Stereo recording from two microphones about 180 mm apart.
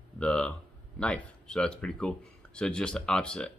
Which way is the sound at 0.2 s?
5° left (ahead or behind).